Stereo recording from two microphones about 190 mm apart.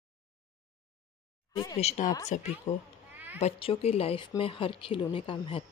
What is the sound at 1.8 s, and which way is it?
A woman's voice, 35° left (ahead or behind).